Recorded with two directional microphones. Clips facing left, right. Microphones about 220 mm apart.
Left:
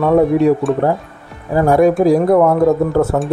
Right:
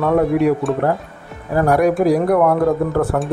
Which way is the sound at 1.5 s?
25° left (ahead or behind).